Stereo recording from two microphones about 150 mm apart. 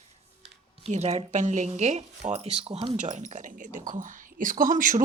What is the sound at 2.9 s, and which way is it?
Speech, 55° right (ahead or behind).